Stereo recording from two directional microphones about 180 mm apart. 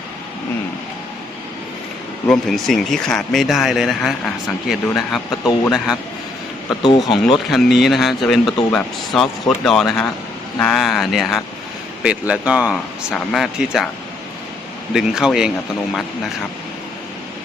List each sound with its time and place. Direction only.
2.3 s speech: centre (ahead or behind)
6.8 s speech: 25° left (ahead or behind)
7.3 s speech: centre (ahead or behind)
14.9 s speech: 5° right (ahead or behind)